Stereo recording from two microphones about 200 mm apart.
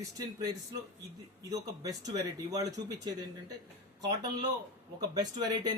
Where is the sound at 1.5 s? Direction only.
15° right (ahead or behind).